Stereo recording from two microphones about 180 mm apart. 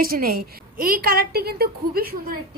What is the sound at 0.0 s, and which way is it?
A woman's voice, 55° right (ahead or behind).